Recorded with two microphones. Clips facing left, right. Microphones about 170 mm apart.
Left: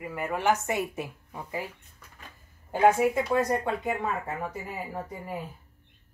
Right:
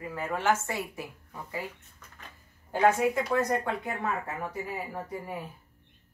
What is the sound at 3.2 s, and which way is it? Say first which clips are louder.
Speech: left 2 dB; 20° left (ahead or behind).